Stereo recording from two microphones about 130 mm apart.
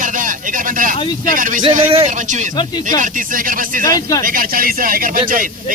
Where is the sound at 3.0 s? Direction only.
90° right.